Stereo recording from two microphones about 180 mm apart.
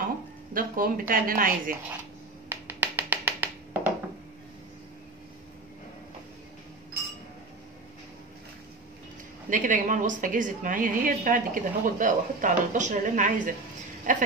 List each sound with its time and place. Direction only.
0.5 s a woman's voice: 50° right (ahead or behind)
2.5 s a sound: 10° right (ahead or behind)
9.5 s a woman's voice: 45° right (ahead or behind)